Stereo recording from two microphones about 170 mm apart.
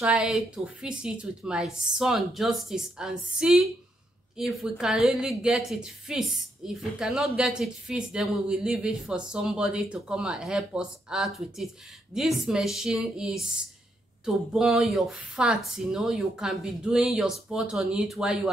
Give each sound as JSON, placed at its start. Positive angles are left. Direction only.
{"t": 0.0, "sound": "a woman's voice", "side_deg": -5}